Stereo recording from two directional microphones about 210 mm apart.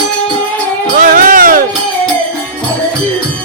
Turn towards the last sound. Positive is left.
turn(degrees=-40)  # may be behind; listen again after turning